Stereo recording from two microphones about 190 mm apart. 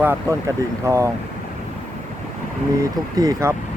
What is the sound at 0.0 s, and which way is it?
Speech, 15° right (ahead or behind).